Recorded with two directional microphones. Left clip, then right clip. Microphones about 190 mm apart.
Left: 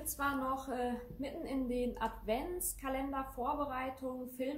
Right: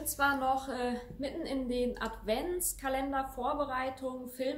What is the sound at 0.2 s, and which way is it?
A woman's voice, 15° right (ahead or behind).